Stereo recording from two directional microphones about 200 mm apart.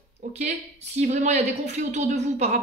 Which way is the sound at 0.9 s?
35° right (ahead or behind).